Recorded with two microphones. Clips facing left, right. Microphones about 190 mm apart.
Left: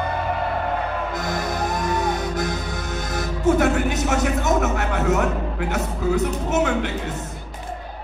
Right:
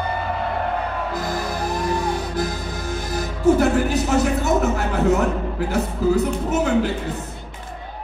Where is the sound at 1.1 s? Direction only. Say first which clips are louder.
Even; 35° right (ahead or behind).